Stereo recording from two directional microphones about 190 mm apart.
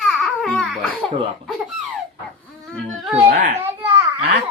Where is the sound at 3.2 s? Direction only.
50° right (ahead or behind).